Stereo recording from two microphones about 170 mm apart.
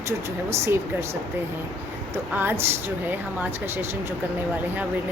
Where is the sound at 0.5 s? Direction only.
15° right (ahead or behind).